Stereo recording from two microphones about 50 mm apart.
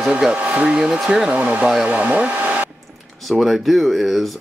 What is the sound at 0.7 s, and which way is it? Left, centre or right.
Speech, centre.